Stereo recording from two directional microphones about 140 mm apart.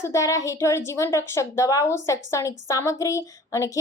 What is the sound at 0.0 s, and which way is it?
A woman's voice, 20° left (ahead or behind).